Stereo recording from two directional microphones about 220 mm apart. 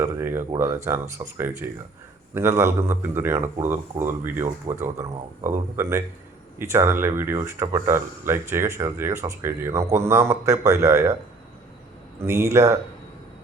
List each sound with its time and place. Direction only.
0.0 s speech: 10° right (ahead or behind)
12.2 s speech: 10° right (ahead or behind)